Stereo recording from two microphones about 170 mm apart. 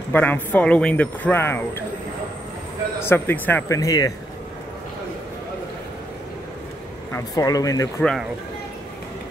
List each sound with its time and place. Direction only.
0.1 s a man's voice: 10° left (ahead or behind)
3.0 s a man's voice: 10° left (ahead or behind)
7.1 s speech: 20° left (ahead or behind)
8.0 s speech: 5° left (ahead or behind)